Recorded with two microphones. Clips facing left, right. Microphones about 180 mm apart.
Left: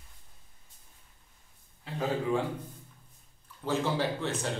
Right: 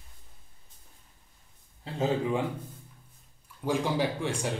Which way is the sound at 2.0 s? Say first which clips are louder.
Right 2 dB; 20° right (ahead or behind).